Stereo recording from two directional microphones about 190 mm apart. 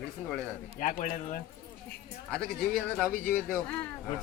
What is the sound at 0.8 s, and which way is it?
Speech, 40° left (ahead or behind).